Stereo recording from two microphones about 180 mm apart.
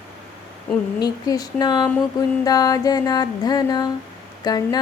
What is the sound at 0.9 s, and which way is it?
Mantra, 20° left (ahead or behind).